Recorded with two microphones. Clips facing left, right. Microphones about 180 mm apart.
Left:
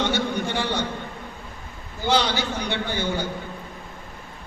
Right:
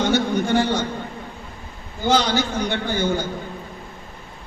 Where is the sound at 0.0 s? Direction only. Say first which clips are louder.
Right 4 dB; 45° right (ahead or behind).